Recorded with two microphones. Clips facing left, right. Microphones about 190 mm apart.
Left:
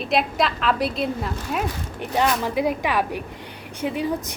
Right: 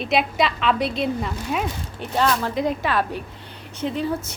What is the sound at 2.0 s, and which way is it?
A woman's voice, 15° left (ahead or behind).